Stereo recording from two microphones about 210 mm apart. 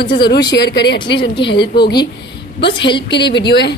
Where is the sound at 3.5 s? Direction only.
55° left (ahead or behind).